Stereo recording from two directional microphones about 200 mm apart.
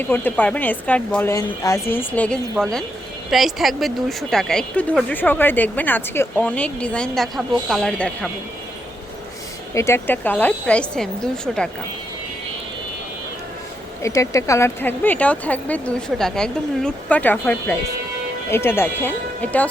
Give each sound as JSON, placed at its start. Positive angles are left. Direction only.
{"t": 0.0, "sound": "speech", "side_deg": 10}
{"t": 9.7, "sound": "speech", "side_deg": 15}
{"t": 14.0, "sound": "speech", "side_deg": 15}